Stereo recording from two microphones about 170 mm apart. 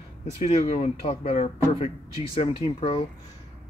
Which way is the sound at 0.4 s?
40° left (ahead or behind).